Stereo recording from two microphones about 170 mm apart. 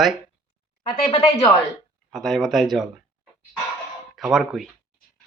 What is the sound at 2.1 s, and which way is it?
Speech, centre (ahead or behind).